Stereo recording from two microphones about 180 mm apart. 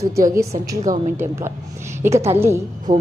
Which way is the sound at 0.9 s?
45° right (ahead or behind).